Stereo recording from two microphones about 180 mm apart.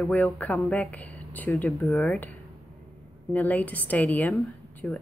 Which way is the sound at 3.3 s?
10° left (ahead or behind).